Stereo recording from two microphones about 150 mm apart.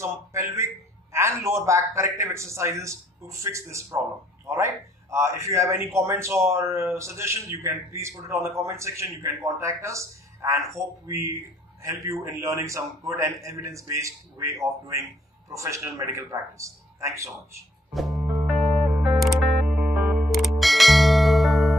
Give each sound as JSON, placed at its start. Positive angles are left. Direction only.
{"t": 0.0, "sound": "a man's voice", "side_deg": -20}
{"t": 18.1, "sound": "music", "side_deg": -15}
{"t": 19.0, "sound": "music", "side_deg": 0}